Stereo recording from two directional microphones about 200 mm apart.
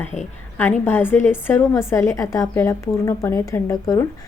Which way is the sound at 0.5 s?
10° left (ahead or behind).